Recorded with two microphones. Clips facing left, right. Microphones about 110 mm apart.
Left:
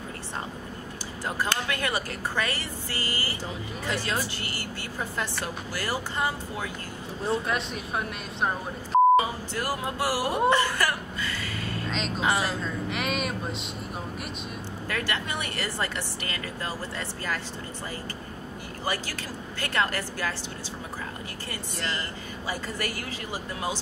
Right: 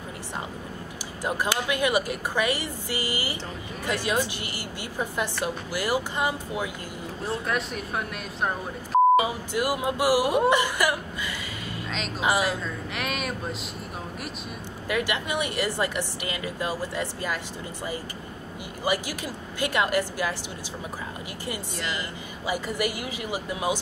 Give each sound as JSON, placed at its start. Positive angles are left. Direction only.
{"t": 1.2, "sound": "a woman's voice", "side_deg": -15}
{"t": 7.2, "sound": "speech", "side_deg": 0}
{"t": 9.1, "sound": "a woman's voice", "side_deg": -15}
{"t": 10.5, "sound": "whimper", "side_deg": -15}
{"t": 12.2, "sound": "a woman's voice", "side_deg": -15}
{"t": 12.9, "sound": "speech", "side_deg": 0}
{"t": 14.9, "sound": "a woman's voice", "side_deg": -15}
{"t": 18.9, "sound": "a woman's voice", "side_deg": -15}
{"t": 21.5, "sound": "a woman's voice", "side_deg": -15}